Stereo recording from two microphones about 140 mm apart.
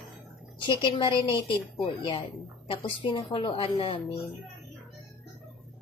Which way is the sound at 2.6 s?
40° left (ahead or behind).